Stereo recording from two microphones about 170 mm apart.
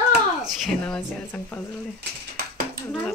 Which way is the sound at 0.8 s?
10° left (ahead or behind).